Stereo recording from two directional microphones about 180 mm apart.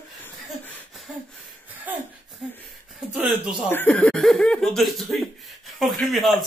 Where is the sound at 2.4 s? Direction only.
Centre (ahead or behind).